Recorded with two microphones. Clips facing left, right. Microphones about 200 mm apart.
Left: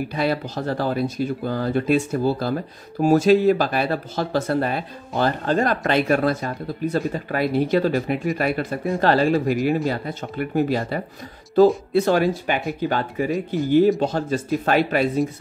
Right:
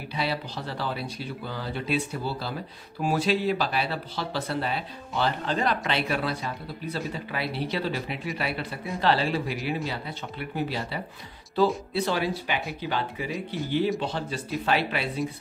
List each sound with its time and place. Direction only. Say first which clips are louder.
0.1 s speech: left 2 dB; 50° left (ahead or behind)